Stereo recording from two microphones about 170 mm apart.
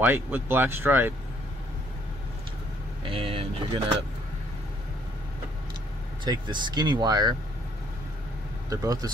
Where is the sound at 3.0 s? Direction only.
30° right (ahead or behind).